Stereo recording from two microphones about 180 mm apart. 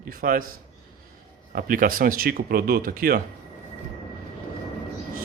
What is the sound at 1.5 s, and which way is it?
Speech, 50° right (ahead or behind).